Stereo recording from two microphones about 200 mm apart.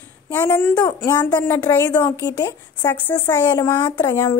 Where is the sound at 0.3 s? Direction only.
10° left (ahead or behind).